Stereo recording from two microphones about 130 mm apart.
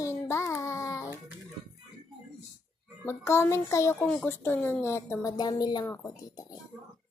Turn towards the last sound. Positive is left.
turn(degrees=25)  # may be behind; listen again after turning